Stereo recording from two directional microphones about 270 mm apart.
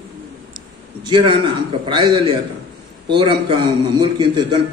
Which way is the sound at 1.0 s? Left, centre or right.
Centre.